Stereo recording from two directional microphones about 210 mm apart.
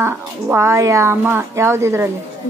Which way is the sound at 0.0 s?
10° right (ahead or behind).